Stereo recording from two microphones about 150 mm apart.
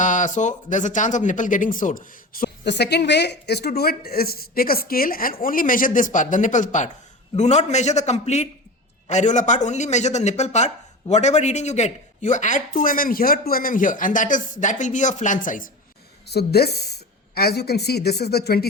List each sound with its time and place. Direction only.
0.0 s speech: 55° left (ahead or behind)
16.3 s a woman's voice: 90° left